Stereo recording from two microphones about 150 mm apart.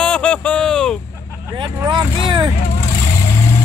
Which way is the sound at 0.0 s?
10° left (ahead or behind).